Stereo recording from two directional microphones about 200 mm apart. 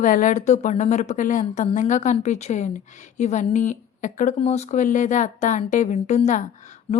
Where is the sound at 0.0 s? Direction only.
40° left (ahead or behind).